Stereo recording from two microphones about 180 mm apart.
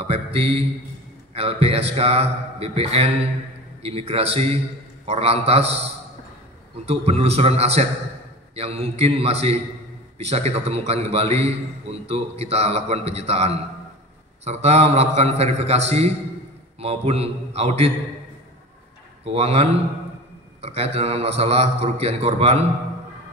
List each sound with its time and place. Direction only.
0.0 s a man's voice: 30° right (ahead or behind)
6.9 s a man's voice: 35° right (ahead or behind)
16.8 s a man's voice: 35° right (ahead or behind)
19.2 s a man's voice: 35° right (ahead or behind)